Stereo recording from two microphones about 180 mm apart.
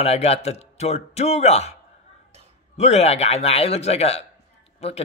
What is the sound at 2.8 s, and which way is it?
Speech, 35° left (ahead or behind).